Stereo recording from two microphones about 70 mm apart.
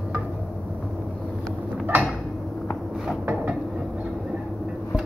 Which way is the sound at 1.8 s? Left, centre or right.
Right.